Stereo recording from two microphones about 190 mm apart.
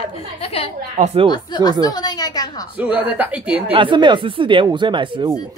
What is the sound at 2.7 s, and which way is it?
Speech, 10° right (ahead or behind).